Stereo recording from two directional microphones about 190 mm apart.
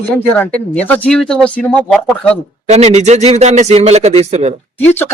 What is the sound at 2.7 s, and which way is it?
Speech, 35° right (ahead or behind).